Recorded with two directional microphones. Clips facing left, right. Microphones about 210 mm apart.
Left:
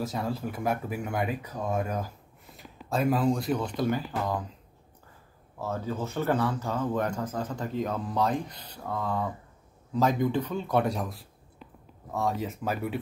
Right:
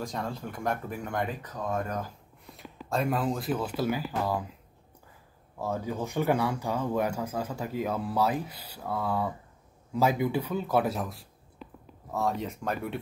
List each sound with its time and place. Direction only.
0.0 s speech: 5° left (ahead or behind)
5.6 s speech: 15° right (ahead or behind); by 13.0 s centre (ahead or behind)